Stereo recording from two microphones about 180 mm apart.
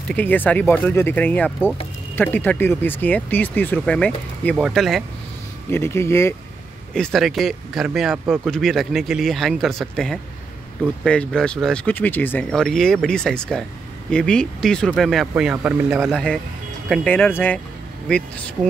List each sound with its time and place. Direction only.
0.1 s speech: 10° left (ahead or behind)
5.7 s speech: 15° left (ahead or behind)
6.9 s speech: 5° left (ahead or behind)